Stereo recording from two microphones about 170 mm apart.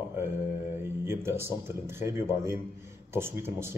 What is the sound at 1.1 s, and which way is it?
Speech, 15° right (ahead or behind).